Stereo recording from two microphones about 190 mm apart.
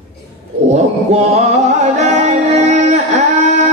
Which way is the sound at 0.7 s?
35° right (ahead or behind).